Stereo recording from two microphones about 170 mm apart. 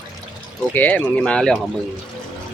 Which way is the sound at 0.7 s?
10° left (ahead or behind).